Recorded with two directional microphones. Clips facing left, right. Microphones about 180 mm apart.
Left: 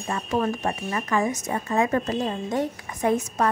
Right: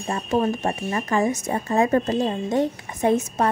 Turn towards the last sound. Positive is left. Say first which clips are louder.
# right 2 dB
turn(degrees=-25)  # may be behind; listen again after turning